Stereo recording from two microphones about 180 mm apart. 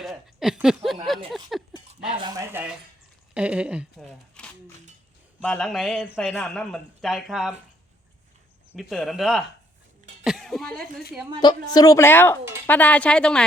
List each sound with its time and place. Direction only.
0.0 s speech: centre (ahead or behind)
2.2 s speech: 15° right (ahead or behind)
4.4 s a sound: 5° left (ahead or behind)
5.4 s speech: 5° left (ahead or behind)
8.7 s speech: centre (ahead or behind)
11.3 s speech: 20° left (ahead or behind); by 13.4 s 5° left (ahead or behind)